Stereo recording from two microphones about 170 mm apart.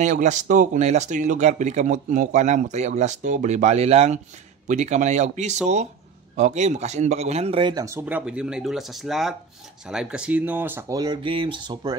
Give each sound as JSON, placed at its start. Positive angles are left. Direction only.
{"t": 0.0, "sound": "a man's voice", "side_deg": -45}
{"t": 7.7, "sound": "speech", "side_deg": -15}